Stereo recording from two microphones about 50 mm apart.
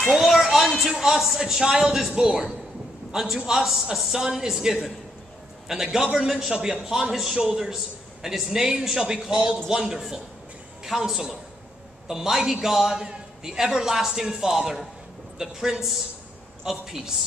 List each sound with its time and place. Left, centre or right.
0.2 s a man's voice: centre
7.6 s a man's voice: centre